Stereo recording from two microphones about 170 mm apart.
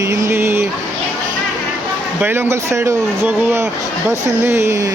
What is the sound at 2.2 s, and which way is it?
Speech, 15° right (ahead or behind).